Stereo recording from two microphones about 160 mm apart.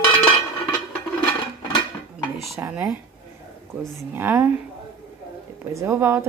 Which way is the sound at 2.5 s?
15° right (ahead or behind).